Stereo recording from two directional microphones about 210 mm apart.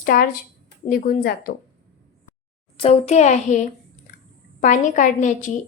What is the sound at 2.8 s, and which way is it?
A woman's voice, 30° left (ahead or behind).